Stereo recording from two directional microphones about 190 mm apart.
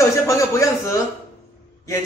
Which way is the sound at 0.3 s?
15° left (ahead or behind).